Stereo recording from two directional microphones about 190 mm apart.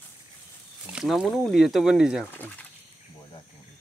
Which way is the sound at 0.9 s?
Centre (ahead or behind).